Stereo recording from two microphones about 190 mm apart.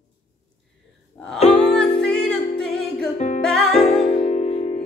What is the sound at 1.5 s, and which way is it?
Music, centre (ahead or behind).